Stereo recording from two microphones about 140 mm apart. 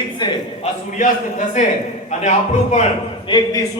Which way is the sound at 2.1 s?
55° left (ahead or behind).